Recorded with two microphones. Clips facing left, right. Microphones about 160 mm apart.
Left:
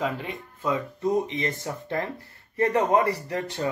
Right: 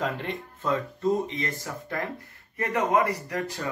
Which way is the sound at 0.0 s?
5° left (ahead or behind).